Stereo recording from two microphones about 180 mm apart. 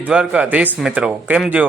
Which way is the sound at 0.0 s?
5° right (ahead or behind).